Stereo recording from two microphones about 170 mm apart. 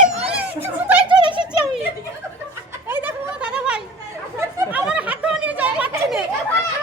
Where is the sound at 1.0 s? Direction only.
30° right (ahead or behind).